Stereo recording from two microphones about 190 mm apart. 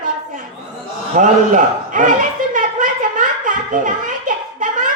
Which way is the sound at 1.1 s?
45° right (ahead or behind).